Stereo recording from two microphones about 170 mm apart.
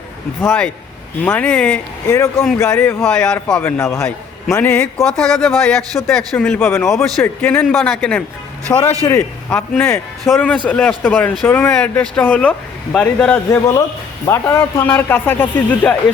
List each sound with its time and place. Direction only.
0.4 s speech: 5° left (ahead or behind)
6.8 s speech: centre (ahead or behind)
8.7 s speech: 15° left (ahead or behind)
13.5 s speech: 15° left (ahead or behind)